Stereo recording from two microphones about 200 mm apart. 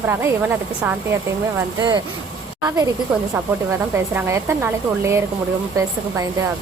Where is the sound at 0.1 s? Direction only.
10° right (ahead or behind).